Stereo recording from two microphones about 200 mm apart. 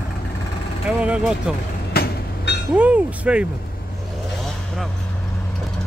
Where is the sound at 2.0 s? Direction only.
50° left (ahead or behind).